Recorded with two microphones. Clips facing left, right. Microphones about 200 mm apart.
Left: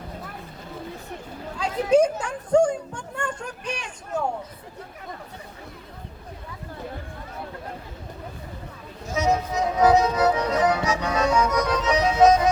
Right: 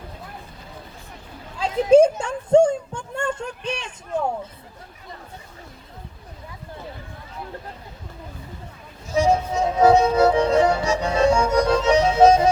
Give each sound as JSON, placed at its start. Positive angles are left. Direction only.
{"t": 1.5, "sound": "speech", "side_deg": -25}
{"t": 9.1, "sound": "music", "side_deg": -30}